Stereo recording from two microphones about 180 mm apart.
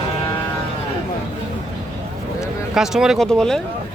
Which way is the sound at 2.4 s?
Centre (ahead or behind).